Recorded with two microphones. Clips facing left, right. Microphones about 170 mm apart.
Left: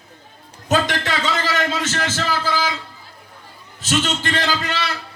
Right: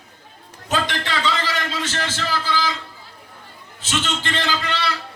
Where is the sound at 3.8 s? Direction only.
45° left (ahead or behind).